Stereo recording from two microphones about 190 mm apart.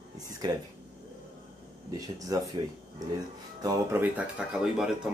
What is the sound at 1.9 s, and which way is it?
Speech, 20° right (ahead or behind).